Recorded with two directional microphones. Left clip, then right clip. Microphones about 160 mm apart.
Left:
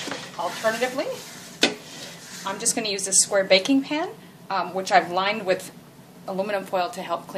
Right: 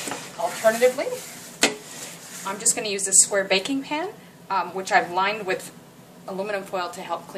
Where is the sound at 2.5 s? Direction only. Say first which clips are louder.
Even; 40° left (ahead or behind).